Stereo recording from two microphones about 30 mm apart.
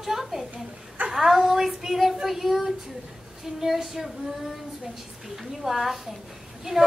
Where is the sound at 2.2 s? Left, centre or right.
Centre.